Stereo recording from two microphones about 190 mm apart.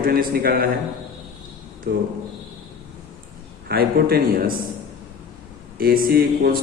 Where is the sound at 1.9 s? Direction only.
55° right (ahead or behind).